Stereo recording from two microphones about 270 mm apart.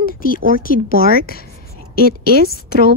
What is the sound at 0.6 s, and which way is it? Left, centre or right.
Speech, left.